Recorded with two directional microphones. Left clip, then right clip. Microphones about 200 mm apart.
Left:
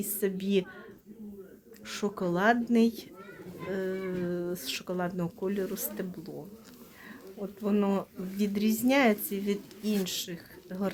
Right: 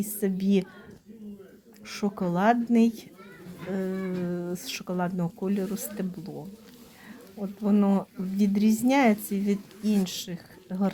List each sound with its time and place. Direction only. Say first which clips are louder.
0.0 s a woman's voice: right 2 dB; 5° right (ahead or behind)
1.9 s speech: right 1 dB; 5° right (ahead or behind)